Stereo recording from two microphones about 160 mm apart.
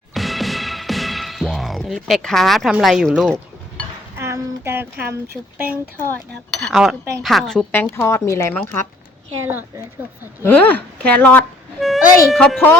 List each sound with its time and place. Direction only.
0.1 s music: centre (ahead or behind)
4.2 s a sound: 15° right (ahead or behind)
5.5 s a woman's voice: 10° right (ahead or behind)
6.6 s a woman's voice: centre (ahead or behind)
9.5 s a woman's voice: 15° right (ahead or behind)
10.4 s a woman's voice: 10° left (ahead or behind)